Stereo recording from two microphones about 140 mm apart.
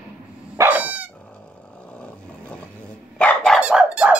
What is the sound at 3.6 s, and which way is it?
Squeak, 10° right (ahead or behind).